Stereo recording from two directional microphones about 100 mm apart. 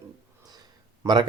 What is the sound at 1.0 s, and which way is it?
Speech, 45° right (ahead or behind).